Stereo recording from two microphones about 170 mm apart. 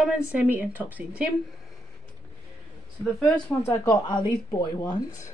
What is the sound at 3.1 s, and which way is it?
Speech, 5° left (ahead or behind).